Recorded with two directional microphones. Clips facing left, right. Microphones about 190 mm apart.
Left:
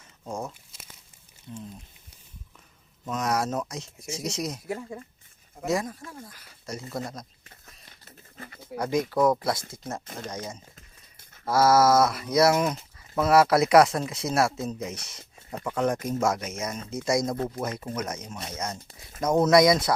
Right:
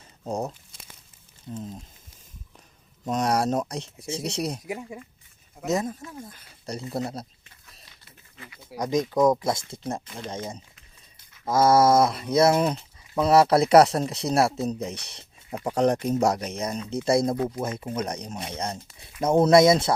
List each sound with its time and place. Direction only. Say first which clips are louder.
0.3 s speech: right 5 dB; 35° right (ahead or behind)
1.5 s speech: right 4 dB; 40° right (ahead or behind)
3.1 s speech: right 4 dB; 30° right (ahead or behind)
4.6 s speech: even; 15° right (ahead or behind); by 7.3 s 30° right (ahead or behind)
7.7 s a sound: left 1 dB; 45° left (ahead or behind)
8.7 s speech: right 1 dB; 15° right (ahead or behind)
10.8 s a sound: left 3 dB; 50° left (ahead or behind)
11.4 s speech: right 1 dB; 20° right (ahead or behind)
13.2 s speech: right 2 dB; 15° right (ahead or behind)
13.5 s speech: right 2 dB; 30° right (ahead or behind)